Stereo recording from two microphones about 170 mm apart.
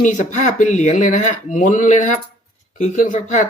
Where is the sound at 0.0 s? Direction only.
45° left (ahead or behind).